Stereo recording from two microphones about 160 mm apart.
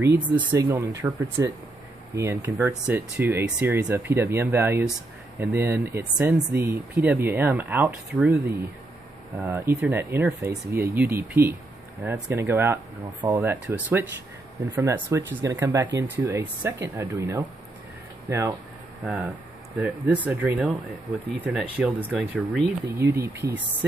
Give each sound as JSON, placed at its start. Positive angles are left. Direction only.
{"t": 0.2, "sound": "speech", "side_deg": -10}
{"t": 19.0, "sound": "speech", "side_deg": -5}
{"t": 22.9, "sound": "speech", "side_deg": -15}